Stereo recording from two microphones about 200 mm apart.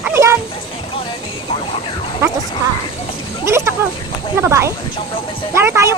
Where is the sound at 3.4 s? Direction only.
15° right (ahead or behind).